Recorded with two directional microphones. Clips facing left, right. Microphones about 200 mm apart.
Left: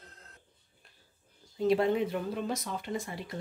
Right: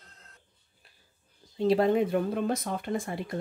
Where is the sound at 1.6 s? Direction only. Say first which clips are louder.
Right 3 dB; 40° right (ahead or behind); by 3.4 s 55° right (ahead or behind).